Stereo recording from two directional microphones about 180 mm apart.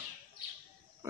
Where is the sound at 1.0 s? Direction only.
15° right (ahead or behind).